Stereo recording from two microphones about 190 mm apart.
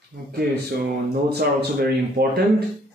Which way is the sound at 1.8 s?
55° right (ahead or behind).